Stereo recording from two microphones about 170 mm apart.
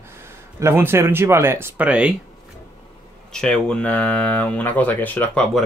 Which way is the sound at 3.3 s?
5° left (ahead or behind).